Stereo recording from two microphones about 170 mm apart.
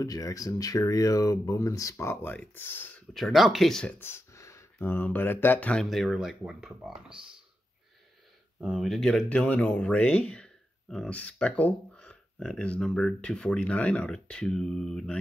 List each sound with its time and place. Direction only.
0.0 s speech: 20° left (ahead or behind)
3.1 s speech: centre (ahead or behind)
4.0 s speech: 15° left (ahead or behind); by 7.2 s 5° right (ahead or behind)
8.5 s speech: 5° right (ahead or behind)